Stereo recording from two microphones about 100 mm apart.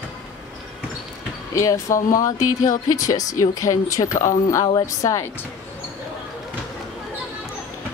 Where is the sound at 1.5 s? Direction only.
35° left (ahead or behind).